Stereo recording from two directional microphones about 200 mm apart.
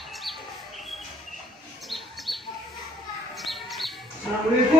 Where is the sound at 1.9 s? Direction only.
Centre (ahead or behind).